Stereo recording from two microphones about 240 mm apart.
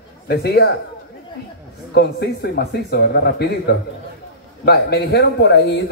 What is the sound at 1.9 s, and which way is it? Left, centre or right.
A man's voice, left.